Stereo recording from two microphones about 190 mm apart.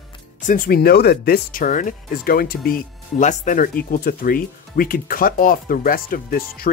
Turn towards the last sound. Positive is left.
turn(degrees=50)  # may be behind; listen again after turning